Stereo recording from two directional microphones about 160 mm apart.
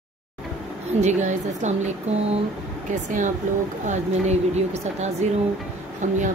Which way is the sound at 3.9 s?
45° right (ahead or behind).